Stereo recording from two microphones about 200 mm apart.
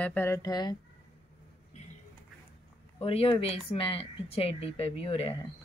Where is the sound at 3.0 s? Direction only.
30° left (ahead or behind).